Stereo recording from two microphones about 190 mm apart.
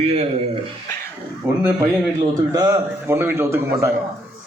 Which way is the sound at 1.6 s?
10° right (ahead or behind).